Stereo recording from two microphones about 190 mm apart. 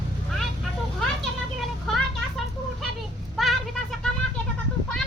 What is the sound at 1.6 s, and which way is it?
Vehicle, centre (ahead or behind).